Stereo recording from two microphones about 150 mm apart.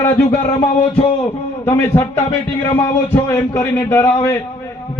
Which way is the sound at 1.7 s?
20° left (ahead or behind).